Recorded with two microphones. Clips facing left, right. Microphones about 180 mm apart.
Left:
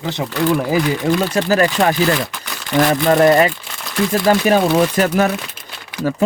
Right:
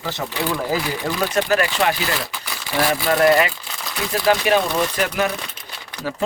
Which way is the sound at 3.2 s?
45° left (ahead or behind).